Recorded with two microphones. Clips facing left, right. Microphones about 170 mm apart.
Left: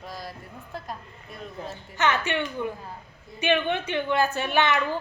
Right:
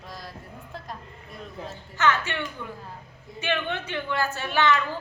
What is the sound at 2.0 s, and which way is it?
A woman's voice, 20° left (ahead or behind).